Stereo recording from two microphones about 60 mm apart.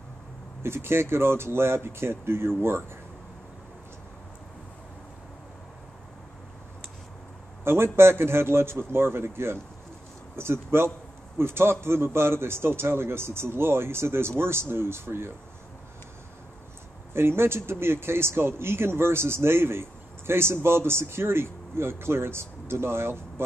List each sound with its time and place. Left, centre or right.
0.6 s speech: right
7.6 s speech: right
17.1 s speech: right